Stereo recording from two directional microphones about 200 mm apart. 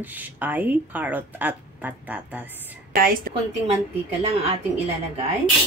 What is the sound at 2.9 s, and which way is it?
Speech, 45° right (ahead or behind).